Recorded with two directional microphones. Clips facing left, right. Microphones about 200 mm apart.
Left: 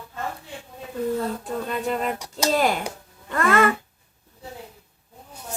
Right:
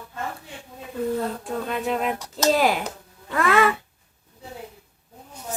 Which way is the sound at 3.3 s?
Centre (ahead or behind).